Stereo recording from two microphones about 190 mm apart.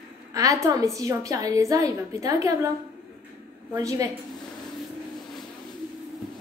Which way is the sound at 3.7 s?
15° right (ahead or behind).